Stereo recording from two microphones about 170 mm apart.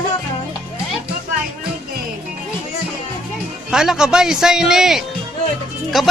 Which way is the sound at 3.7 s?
5° right (ahead or behind).